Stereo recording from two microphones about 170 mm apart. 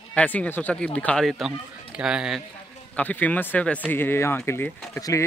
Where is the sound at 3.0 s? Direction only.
10° left (ahead or behind).